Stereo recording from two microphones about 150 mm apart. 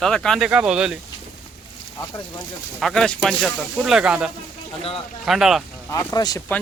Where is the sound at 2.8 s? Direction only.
Centre (ahead or behind).